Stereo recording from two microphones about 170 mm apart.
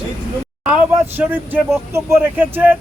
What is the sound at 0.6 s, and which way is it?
Speech, 10° right (ahead or behind).